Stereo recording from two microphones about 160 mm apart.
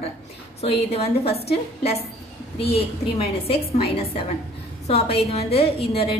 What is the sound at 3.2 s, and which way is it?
A woman's voice, 35° left (ahead or behind).